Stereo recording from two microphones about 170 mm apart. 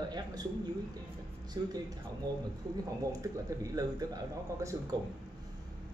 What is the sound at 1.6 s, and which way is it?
Speech, 25° right (ahead or behind).